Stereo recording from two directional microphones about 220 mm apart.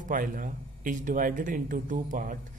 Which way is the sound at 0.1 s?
40° right (ahead or behind).